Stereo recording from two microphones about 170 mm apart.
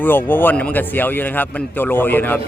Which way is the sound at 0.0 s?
10° left (ahead or behind).